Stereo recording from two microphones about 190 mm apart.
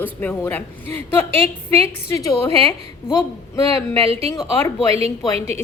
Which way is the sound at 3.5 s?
15° left (ahead or behind).